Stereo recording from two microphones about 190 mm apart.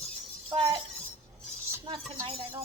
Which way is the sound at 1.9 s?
25° right (ahead or behind).